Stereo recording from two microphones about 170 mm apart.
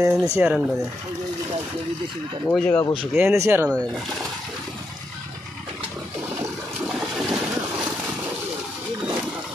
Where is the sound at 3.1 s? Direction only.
15° right (ahead or behind).